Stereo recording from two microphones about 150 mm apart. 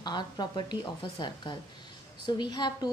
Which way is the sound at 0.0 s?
30° left (ahead or behind).